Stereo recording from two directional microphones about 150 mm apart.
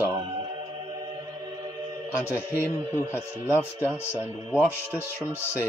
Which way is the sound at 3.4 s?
15° left (ahead or behind).